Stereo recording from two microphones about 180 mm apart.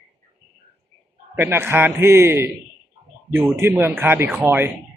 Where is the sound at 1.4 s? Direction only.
10° right (ahead or behind).